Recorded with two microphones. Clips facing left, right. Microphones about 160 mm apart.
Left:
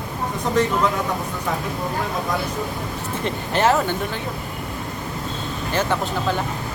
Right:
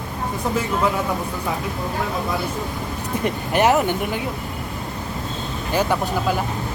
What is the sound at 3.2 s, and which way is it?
Speech, 15° right (ahead or behind).